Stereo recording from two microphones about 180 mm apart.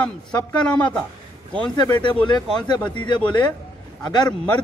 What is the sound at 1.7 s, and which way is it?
Speech, 25° left (ahead or behind).